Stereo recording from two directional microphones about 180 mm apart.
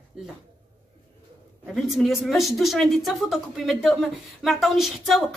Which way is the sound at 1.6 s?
Centre (ahead or behind).